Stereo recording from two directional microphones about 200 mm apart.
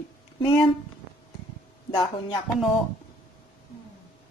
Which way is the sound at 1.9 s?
20° left (ahead or behind).